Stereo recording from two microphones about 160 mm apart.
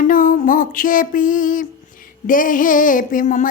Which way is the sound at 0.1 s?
60° left (ahead or behind).